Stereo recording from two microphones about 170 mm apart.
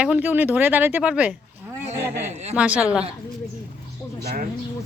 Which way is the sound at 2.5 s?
5° right (ahead or behind).